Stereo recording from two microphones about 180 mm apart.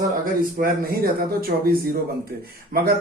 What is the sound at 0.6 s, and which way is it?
Speech, 55° right (ahead or behind).